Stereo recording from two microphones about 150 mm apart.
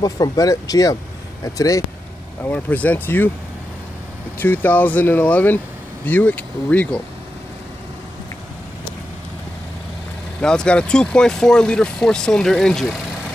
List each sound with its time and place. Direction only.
0.0 s speech: 25° left (ahead or behind)
2.4 s speech: 10° left (ahead or behind)
4.4 s speech: 10° left (ahead or behind)
10.4 s speech: 5° left (ahead or behind)